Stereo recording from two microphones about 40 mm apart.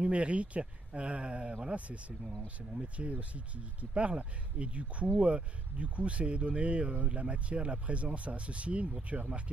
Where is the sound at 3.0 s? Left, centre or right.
Right.